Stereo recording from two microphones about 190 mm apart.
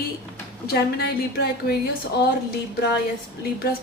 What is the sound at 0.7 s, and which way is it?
A woman's voice, 60° left (ahead or behind).